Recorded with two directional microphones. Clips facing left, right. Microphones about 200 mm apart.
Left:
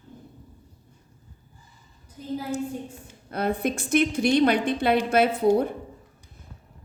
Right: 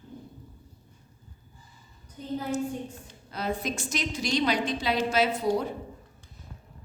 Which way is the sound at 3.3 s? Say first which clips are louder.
Left 5 dB; 55° left (ahead or behind).